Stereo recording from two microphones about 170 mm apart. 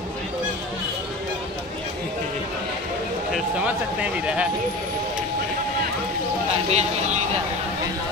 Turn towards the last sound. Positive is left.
turn(degrees=-40)  # may be behind; listen again after turning